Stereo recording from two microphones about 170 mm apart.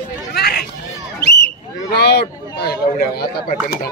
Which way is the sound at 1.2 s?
80° left.